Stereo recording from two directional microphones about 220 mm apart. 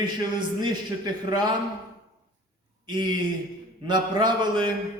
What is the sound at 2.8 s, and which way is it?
A man's voice, 20° right (ahead or behind).